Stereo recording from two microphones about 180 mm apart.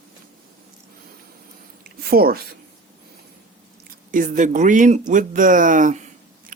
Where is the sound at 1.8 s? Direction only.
55° right (ahead or behind).